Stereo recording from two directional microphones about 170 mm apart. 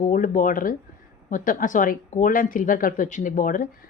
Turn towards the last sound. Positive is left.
turn(degrees=50)  # may be behind; listen again after turning